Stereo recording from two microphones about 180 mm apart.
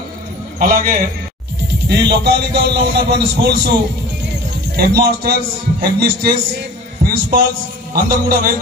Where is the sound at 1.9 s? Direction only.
65° right (ahead or behind).